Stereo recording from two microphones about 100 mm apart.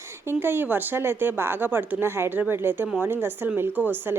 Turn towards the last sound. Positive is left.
turn(degrees=-20)  # may be behind; listen again after turning